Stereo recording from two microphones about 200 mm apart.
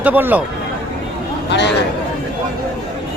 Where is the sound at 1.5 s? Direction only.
60° left (ahead or behind).